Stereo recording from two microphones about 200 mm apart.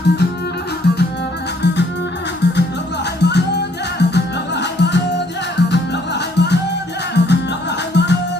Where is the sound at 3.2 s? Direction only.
55° left (ahead or behind).